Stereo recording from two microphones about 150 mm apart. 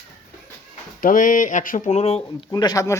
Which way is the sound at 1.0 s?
65° left (ahead or behind).